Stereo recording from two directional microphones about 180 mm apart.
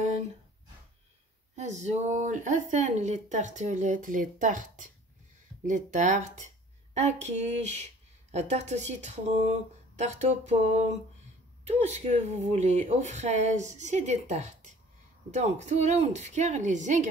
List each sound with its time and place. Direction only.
1.6 s speech: 40° right (ahead or behind)
11.6 s speech: 40° right (ahead or behind)